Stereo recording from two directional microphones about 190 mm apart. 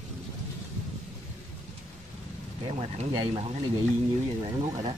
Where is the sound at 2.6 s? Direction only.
30° right (ahead or behind).